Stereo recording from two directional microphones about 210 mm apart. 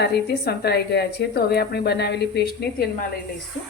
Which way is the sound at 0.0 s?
50° left (ahead or behind).